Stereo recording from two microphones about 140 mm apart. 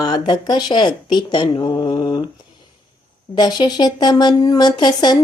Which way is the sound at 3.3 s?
30° left (ahead or behind).